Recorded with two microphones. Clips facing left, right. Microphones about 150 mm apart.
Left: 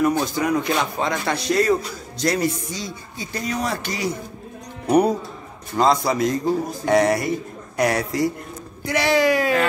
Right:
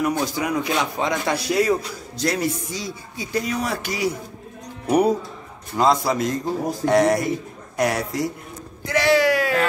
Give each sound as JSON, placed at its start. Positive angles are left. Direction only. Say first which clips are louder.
{"t": 0.0, "sound": "a man's voice", "louder": "left 3 dB", "side_deg": -5}
{"t": 8.8, "sound": "speech", "louder": "right 1 dB", "side_deg": 15}